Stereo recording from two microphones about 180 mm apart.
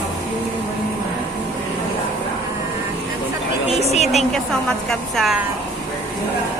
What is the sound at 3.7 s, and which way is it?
Speech, 35° left (ahead or behind).